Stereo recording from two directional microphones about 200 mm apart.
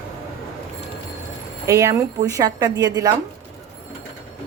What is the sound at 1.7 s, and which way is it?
Speech, 15° right (ahead or behind).